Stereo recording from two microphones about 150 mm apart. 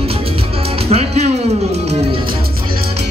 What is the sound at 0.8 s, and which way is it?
Music, 40° right (ahead or behind).